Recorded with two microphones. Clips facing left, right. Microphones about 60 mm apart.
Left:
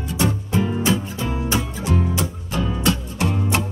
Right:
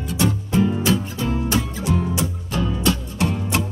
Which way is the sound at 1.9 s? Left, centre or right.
Left.